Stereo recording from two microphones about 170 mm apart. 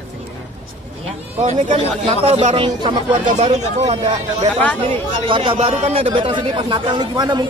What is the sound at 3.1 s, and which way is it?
Speech, 45° right (ahead or behind).